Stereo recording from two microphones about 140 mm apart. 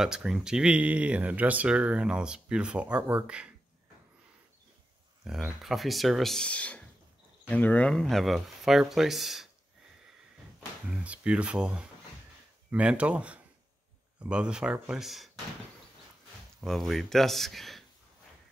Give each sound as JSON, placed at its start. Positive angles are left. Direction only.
{"t": 0.0, "sound": "speech", "side_deg": -5}
{"t": 5.2, "sound": "speech", "side_deg": -5}
{"t": 10.9, "sound": "speech", "side_deg": -10}
{"t": 16.6, "sound": "speech", "side_deg": 0}